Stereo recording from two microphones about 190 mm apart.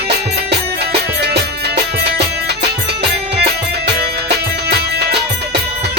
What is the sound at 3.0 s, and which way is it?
Music, 60° right (ahead or behind).